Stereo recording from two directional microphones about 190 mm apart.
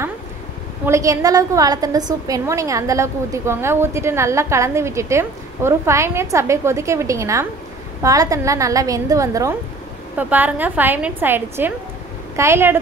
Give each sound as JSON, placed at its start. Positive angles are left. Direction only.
{"t": 0.8, "sound": "a woman's voice", "side_deg": -15}